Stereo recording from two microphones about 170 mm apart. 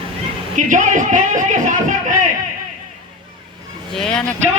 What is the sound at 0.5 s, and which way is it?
Speech, 45° right (ahead or behind).